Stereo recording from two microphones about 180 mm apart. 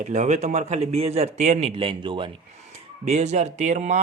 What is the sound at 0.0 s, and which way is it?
A man's voice, 40° right (ahead or behind).